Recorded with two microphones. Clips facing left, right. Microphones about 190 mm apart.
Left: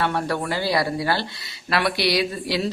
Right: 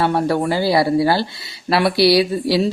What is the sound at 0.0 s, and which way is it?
Speech, 30° right (ahead or behind).